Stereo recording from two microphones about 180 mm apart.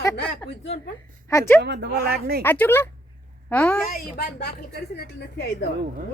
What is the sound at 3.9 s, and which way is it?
Speech, 50° left (ahead or behind).